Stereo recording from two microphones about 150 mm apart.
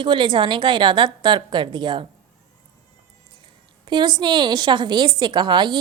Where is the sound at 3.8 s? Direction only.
30° right (ahead or behind).